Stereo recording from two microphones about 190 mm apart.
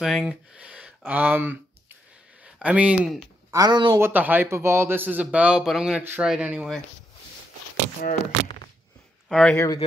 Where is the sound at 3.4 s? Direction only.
20° right (ahead or behind).